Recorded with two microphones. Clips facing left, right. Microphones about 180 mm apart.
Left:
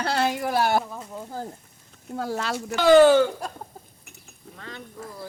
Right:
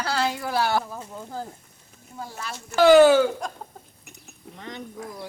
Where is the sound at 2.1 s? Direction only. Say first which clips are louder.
Left 8 dB; 70° left (ahead or behind).